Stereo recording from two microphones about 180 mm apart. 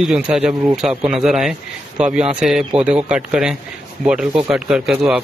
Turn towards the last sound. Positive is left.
turn(degrees=-5)  # may be behind; listen again after turning